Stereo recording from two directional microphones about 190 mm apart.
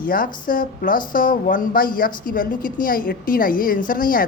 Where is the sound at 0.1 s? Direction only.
45° left (ahead or behind).